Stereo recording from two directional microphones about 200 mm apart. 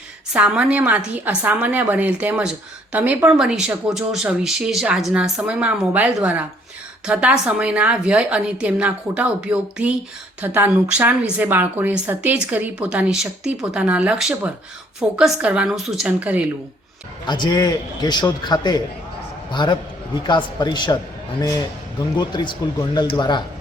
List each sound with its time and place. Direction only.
0.3 s a woman's voice: 5° right (ahead or behind)
17.2 s a man's voice: 20° left (ahead or behind)
22.2 s a man's voice: 20° left (ahead or behind)